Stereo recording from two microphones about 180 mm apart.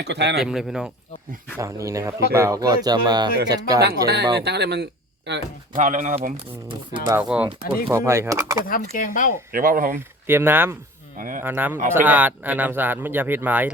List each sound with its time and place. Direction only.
0.0 s speech: 70° right (ahead or behind)
0.4 s speech: 5° right (ahead or behind)
1.5 s speech: 15° right (ahead or behind)
3.8 s speech: 65° right (ahead or behind)
5.7 s speech: 45° right (ahead or behind)
6.7 s speech: 25° right (ahead or behind)
7.1 s speech: 10° right (ahead or behind)
8.6 s speech: 50° left (ahead or behind)
9.5 s speech: 55° right (ahead or behind)
10.2 s speech: 10° right (ahead or behind)
11.2 s speech: 50° right (ahead or behind)
11.4 s speech: 10° right (ahead or behind)